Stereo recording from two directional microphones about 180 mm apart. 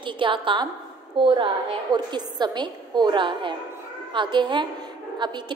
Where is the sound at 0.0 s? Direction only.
25° right (ahead or behind).